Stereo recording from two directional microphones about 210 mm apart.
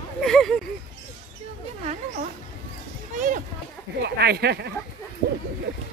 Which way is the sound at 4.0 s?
50° right (ahead or behind).